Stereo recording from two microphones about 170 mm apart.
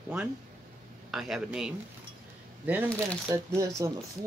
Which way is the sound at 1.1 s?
Centre (ahead or behind).